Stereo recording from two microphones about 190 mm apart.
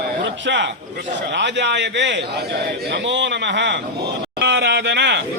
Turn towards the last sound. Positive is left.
turn(degrees=-65)  # may be behind; listen again after turning